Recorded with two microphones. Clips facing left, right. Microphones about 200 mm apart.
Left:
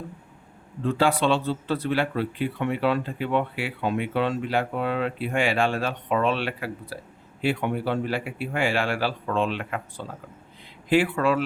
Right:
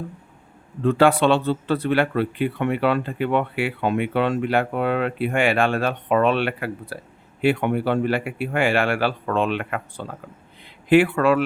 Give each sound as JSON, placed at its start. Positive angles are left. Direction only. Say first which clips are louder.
{"t": 0.9, "sound": "speech", "louder": "right 5 dB", "side_deg": -60}